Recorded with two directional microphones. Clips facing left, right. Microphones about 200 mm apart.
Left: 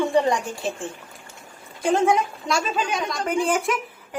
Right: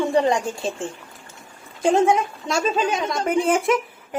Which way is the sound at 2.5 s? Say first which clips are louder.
Right 4 dB; 25° right (ahead or behind).